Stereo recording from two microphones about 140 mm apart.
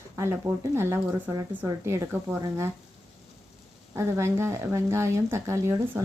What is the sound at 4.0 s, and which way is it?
Speech, 20° right (ahead or behind).